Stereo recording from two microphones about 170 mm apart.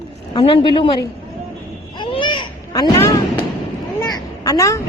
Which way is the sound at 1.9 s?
30° left (ahead or behind).